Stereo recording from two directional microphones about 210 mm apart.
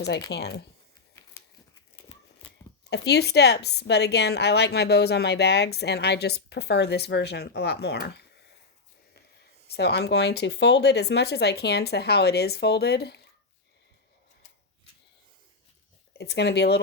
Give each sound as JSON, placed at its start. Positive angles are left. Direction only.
{"t": 0.3, "sound": "a woman's voice", "side_deg": 50}
{"t": 2.9, "sound": "a woman's voice", "side_deg": 50}
{"t": 9.6, "sound": "a woman's voice", "side_deg": 50}
{"t": 16.1, "sound": "a woman's voice", "side_deg": 55}